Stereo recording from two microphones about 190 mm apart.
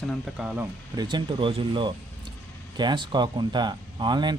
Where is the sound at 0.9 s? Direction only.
25° right (ahead or behind).